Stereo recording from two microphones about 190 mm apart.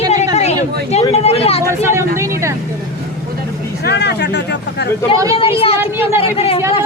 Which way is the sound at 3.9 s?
60° left (ahead or behind).